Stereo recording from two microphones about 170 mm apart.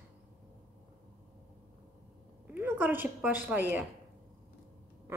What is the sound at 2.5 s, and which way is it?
Speech, 10° right (ahead or behind).